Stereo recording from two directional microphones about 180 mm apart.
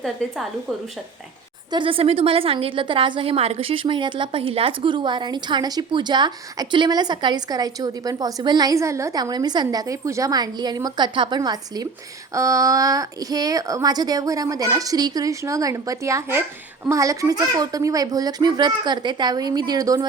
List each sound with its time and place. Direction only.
1.7 s a woman's voice: 30° right (ahead or behind)